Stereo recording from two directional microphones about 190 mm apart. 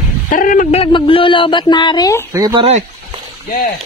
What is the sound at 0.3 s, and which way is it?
Speech, 45° left (ahead or behind).